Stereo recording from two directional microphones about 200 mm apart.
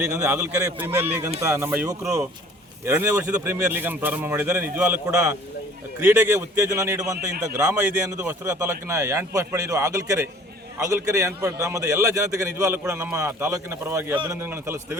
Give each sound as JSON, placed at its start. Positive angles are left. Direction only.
{"t": 0.0, "sound": "a man's voice", "side_deg": -10}